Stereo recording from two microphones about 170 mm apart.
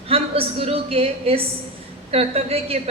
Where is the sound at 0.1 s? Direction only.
35° right (ahead or behind).